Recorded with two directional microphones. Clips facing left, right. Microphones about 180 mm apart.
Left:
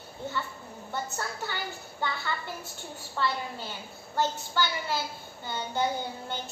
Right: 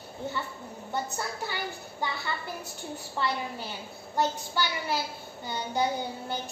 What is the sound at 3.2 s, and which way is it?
A woman's voice, 15° right (ahead or behind).